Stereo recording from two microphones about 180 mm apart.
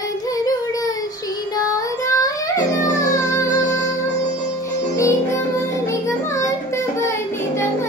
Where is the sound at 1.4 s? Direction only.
20° left (ahead or behind).